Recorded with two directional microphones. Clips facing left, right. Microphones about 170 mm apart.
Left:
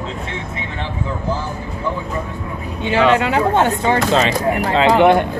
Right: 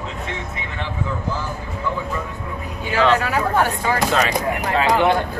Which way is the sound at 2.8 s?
25° left (ahead or behind).